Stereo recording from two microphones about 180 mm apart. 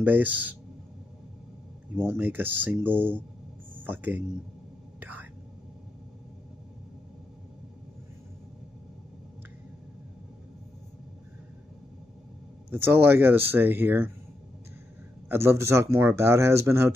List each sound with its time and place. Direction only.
0.0 s speech: 10° right (ahead or behind)
2.0 s speech: 10° right (ahead or behind)
12.7 s speech: 10° right (ahead or behind)
15.2 s speech: 15° right (ahead or behind)